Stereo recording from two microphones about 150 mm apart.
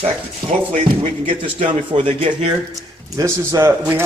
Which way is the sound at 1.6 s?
45° right (ahead or behind).